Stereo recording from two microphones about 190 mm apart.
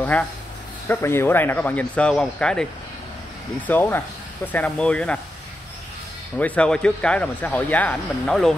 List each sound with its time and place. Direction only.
0.0 s speech: 5° left (ahead or behind)
6.3 s speech: 5° left (ahead or behind)